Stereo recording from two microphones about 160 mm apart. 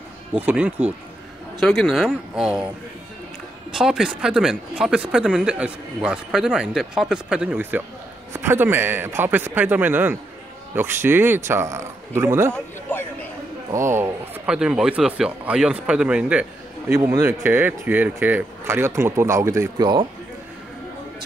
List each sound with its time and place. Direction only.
0.3 s speech: 10° right (ahead or behind)
3.7 s speech: 5° right (ahead or behind)
13.7 s speech: 15° right (ahead or behind)
16.9 s a man's voice: 20° right (ahead or behind)